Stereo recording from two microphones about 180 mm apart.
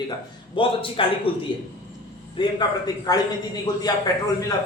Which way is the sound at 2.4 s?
30° left (ahead or behind).